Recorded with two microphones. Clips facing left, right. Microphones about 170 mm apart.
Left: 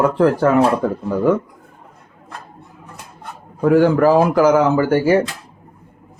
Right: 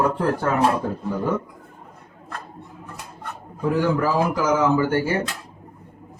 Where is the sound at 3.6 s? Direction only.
65° left (ahead or behind); by 5.2 s 85° left.